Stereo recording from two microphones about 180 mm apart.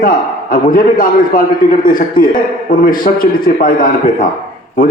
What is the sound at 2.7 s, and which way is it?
A man's voice, 50° left (ahead or behind).